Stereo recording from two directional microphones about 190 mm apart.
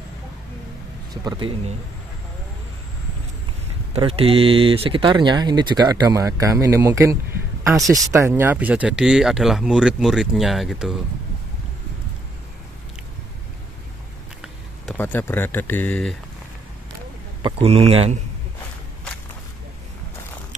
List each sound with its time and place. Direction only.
1.1 s speech: 20° right (ahead or behind)
3.9 s speech: 30° right (ahead or behind); by 11.0 s centre (ahead or behind)
15.0 s speech: 10° left (ahead or behind)
17.4 s speech: 30° right (ahead or behind)